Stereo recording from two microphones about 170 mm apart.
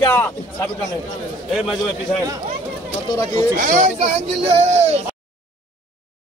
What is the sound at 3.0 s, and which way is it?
Speech, 20° left (ahead or behind).